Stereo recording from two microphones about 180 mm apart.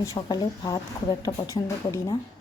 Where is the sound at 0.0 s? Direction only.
20° left (ahead or behind).